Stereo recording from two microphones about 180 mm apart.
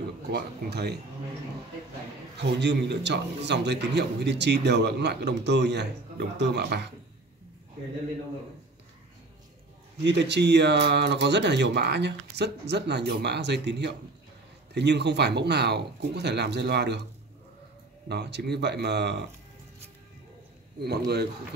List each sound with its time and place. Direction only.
0.3 s a man's voice: 65° right (ahead or behind)
2.3 s a man's voice: 75° right (ahead or behind)
10.0 s a man's voice: 75° right (ahead or behind)
18.0 s a man's voice: 70° right (ahead or behind)